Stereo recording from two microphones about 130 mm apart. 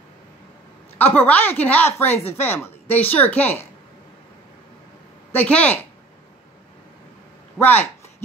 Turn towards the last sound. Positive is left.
turn(degrees=15)  # may be behind; listen again after turning